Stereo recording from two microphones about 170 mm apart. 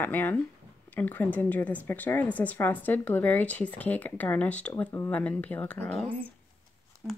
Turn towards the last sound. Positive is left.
turn(degrees=-10)  # may be behind; listen again after turning